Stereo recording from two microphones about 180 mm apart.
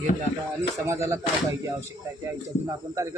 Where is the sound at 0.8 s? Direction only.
15° right (ahead or behind).